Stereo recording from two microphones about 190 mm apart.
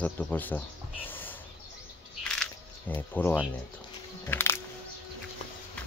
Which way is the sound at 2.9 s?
10° left (ahead or behind).